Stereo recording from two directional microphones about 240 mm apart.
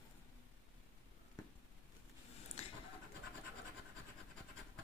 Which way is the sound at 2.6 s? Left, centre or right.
Left.